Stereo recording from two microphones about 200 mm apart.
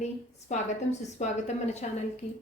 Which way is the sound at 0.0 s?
35° left (ahead or behind).